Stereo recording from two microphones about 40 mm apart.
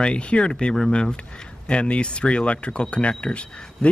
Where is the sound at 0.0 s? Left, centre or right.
Left.